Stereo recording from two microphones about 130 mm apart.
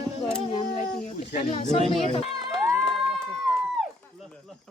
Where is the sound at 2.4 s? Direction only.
40° right (ahead or behind).